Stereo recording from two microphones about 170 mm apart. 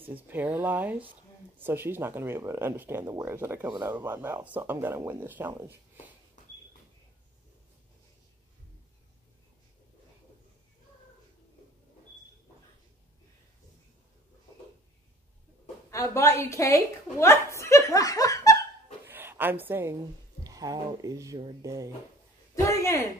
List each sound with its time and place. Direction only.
0.0 s speech: 10° right (ahead or behind)
15.9 s a woman's voice: 20° left (ahead or behind)
19.0 s a woman's voice: 10° right (ahead or behind)
22.6 s a man's voice: 20° left (ahead or behind)